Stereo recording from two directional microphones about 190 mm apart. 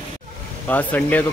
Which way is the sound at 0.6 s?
10° left (ahead or behind).